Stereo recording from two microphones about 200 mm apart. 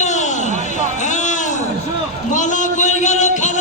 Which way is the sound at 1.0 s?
40° left (ahead or behind).